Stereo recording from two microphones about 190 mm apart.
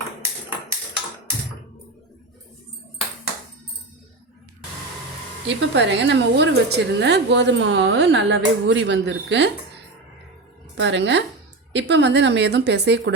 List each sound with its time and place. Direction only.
5.5 s a woman's voice: 70° right (ahead or behind)
10.8 s a woman's voice: 70° right (ahead or behind)